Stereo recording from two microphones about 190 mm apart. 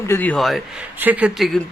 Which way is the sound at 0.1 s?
10° left (ahead or behind).